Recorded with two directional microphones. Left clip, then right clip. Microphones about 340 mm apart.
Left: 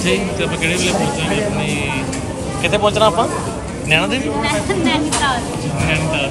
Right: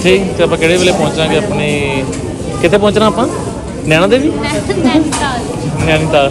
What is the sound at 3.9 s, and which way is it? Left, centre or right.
Speech, right.